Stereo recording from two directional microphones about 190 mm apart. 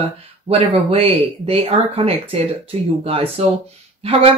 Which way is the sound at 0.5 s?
30° right (ahead or behind).